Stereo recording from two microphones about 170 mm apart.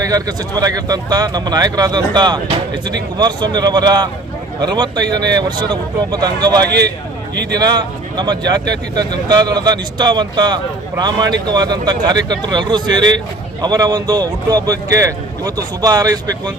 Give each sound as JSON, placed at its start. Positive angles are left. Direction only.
{"t": 0.0, "sound": "speech", "side_deg": -20}
{"t": 6.7, "sound": "a man's voice", "side_deg": -80}
{"t": 7.5, "sound": "speech", "side_deg": -25}